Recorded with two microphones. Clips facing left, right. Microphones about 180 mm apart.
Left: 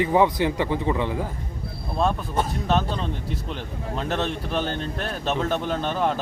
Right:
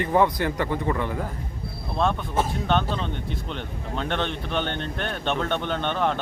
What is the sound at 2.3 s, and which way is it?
Speech, centre (ahead or behind).